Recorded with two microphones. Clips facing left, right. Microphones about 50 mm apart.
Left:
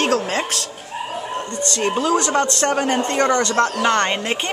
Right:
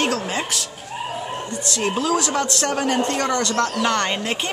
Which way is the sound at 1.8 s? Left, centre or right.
Centre.